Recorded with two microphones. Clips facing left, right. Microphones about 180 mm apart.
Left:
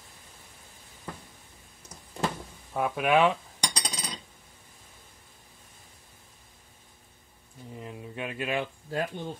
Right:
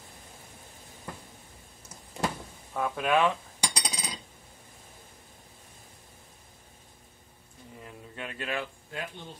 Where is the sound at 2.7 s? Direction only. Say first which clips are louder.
Left 2 dB; 15° left (ahead or behind).